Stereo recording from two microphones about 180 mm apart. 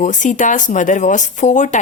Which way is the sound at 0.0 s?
45° left (ahead or behind).